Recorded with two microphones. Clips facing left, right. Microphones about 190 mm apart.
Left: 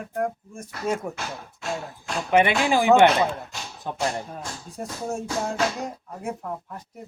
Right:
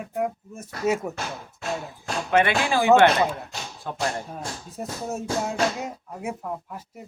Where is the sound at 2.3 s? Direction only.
15° left (ahead or behind).